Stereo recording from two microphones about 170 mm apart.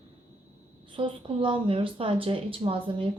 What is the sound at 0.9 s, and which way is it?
Speech, 30° right (ahead or behind).